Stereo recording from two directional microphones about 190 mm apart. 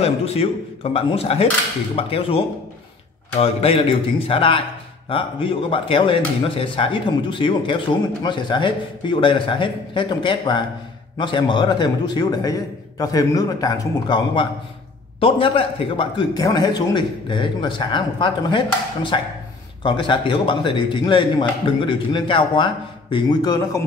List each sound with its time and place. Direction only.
0.0 s speech: 35° left (ahead or behind)